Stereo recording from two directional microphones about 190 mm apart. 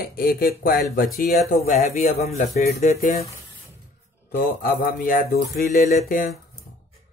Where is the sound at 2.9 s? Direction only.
50° left (ahead or behind).